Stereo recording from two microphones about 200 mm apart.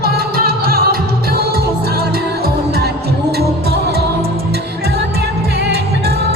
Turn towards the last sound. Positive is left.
turn(degrees=-55)  # may be behind; listen again after turning